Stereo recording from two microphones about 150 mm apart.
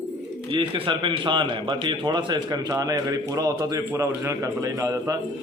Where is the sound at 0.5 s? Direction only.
35° right (ahead or behind).